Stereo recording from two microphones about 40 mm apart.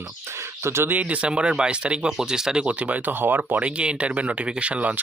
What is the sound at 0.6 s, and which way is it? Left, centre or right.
Speech, right.